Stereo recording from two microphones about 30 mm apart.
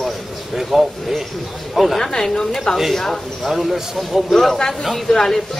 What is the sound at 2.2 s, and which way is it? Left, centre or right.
Speech, left.